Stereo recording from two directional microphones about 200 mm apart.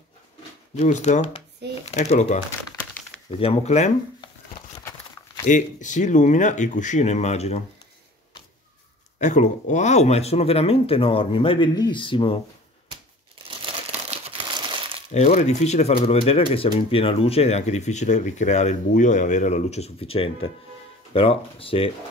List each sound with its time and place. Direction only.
0.7 s speech: 35° left (ahead or behind)
5.5 s speech: 40° left (ahead or behind)
9.2 s speech: 35° left (ahead or behind)
14.2 s crumpling: 25° right (ahead or behind)
15.1 s speech: 35° left (ahead or behind)